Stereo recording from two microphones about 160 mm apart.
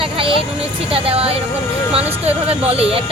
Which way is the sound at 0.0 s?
35° right (ahead or behind).